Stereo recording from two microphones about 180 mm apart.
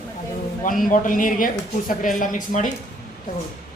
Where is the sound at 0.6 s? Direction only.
45° left (ahead or behind).